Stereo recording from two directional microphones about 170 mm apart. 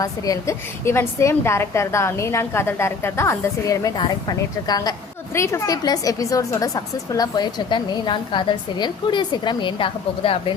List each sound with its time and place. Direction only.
0.0 s a woman's voice: 20° left (ahead or behind)